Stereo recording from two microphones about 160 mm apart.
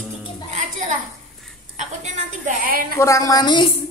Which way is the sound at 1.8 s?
50° right (ahead or behind).